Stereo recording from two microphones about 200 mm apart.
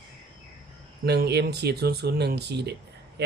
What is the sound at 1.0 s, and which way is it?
Speech, 55° right (ahead or behind).